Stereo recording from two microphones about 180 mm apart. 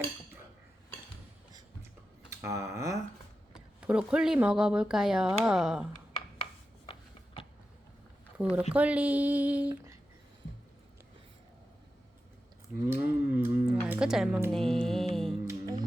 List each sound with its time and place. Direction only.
2.3 s a woman's voice: 15° right (ahead or behind)
3.5 s speech: 5° right (ahead or behind)
8.4 s a woman's voice: 5° right (ahead or behind)
12.9 s speech: 10° right (ahead or behind)
14.5 s music: 5° left (ahead or behind)
15.4 s music: 20° right (ahead or behind)